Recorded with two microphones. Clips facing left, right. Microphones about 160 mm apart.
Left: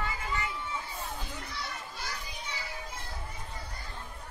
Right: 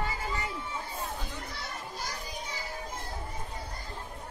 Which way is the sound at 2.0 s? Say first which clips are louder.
Right 3 dB; 40° right (ahead or behind).